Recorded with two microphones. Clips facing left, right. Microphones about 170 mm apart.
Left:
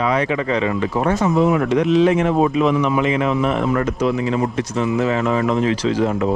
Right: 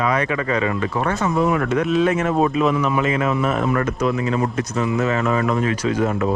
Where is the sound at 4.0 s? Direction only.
25° left (ahead or behind).